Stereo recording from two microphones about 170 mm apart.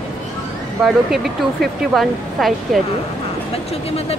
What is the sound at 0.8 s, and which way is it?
Speech, centre (ahead or behind).